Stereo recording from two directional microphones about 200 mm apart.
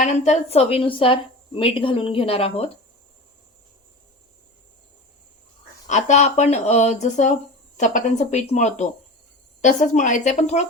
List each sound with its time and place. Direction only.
0.0 s a woman's voice: 35° left (ahead or behind)
5.9 s speech: 35° left (ahead or behind)